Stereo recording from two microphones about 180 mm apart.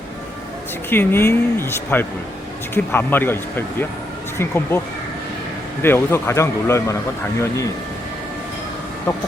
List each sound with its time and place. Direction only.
0.9 s speech: 10° left (ahead or behind)
4.4 s speech: 15° left (ahead or behind)
5.8 s speech: 10° left (ahead or behind)
9.1 s speech: 15° left (ahead or behind)